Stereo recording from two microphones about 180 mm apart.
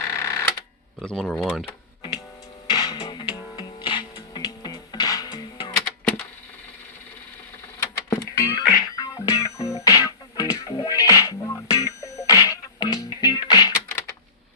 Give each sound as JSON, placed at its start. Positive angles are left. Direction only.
{"t": 0.0, "sound": "a sound", "side_deg": 15}
{"t": 1.0, "sound": "speech", "side_deg": 5}
{"t": 2.6, "sound": "music", "side_deg": 25}
{"t": 7.8, "sound": "music", "side_deg": 15}